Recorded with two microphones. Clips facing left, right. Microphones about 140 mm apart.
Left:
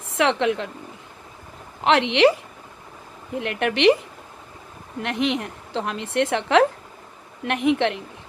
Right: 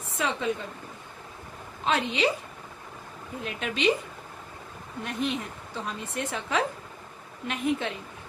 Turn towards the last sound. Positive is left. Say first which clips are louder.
# left 8 dB
turn(degrees=70)  # may be behind; listen again after turning